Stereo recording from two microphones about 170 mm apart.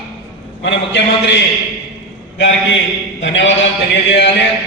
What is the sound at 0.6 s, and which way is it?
A man's voice, 90° left.